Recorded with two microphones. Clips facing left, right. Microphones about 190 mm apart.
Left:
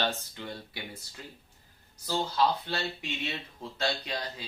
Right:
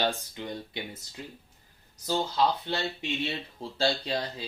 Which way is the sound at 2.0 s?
20° right (ahead or behind).